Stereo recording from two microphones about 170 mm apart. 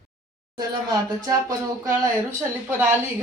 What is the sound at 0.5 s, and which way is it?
Speech, 25° right (ahead or behind).